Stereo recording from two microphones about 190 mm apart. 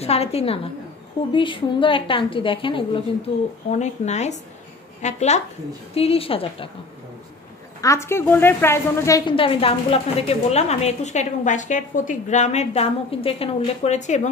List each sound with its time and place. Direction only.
0.0 s a woman's voice: 30° left (ahead or behind)
7.8 s a woman's voice: 15° left (ahead or behind); by 14.3 s 40° left (ahead or behind)